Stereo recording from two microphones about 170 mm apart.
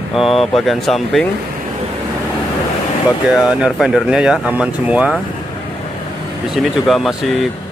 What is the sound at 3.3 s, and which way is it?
Speech, centre (ahead or behind).